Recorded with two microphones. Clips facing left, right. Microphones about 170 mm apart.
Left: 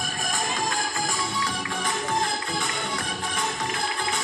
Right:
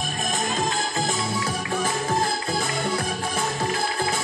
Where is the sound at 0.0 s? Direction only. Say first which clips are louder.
Right 3 dB; 25° right (ahead or behind).